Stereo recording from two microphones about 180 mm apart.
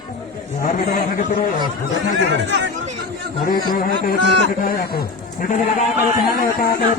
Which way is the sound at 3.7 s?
50° left (ahead or behind).